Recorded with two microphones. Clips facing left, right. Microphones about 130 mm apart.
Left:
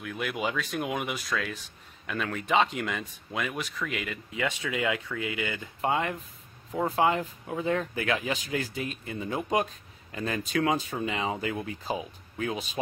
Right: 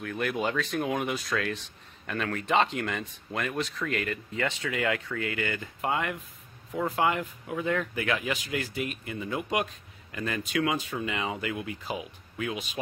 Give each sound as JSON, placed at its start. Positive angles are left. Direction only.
{"t": 0.0, "sound": "speech", "side_deg": 5}
{"t": 5.8, "sound": "speech", "side_deg": 30}